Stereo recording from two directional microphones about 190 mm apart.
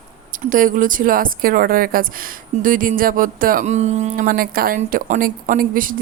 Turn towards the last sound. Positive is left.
turn(degrees=-45)  # may be behind; listen again after turning